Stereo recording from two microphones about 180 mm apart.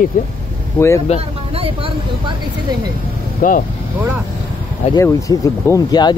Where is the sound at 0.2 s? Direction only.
50° left (ahead or behind).